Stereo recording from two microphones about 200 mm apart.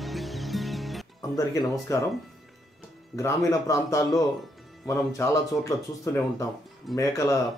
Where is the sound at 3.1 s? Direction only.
15° left (ahead or behind).